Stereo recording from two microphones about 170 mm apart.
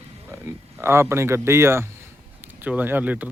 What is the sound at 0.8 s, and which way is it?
Speech, 15° right (ahead or behind).